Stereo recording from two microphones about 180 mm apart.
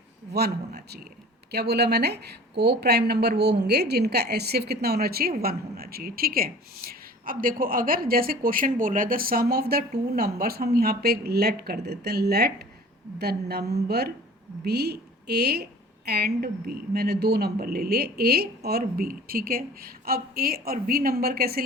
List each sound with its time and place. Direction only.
0.3 s speech: 60° right (ahead or behind)